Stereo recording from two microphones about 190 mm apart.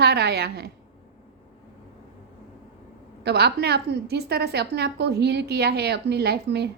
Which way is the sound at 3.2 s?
60° right (ahead or behind).